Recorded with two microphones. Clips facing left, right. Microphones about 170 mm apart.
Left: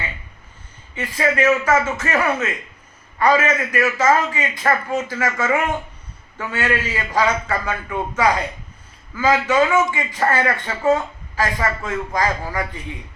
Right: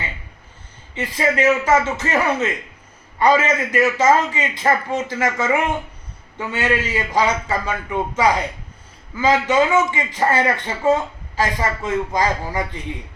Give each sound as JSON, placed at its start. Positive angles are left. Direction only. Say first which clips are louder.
{"t": 0.9, "sound": "a man's voice", "louder": "even", "side_deg": -20}